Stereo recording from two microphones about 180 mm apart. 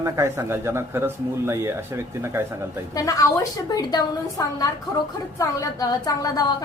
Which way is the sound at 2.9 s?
20° left (ahead or behind).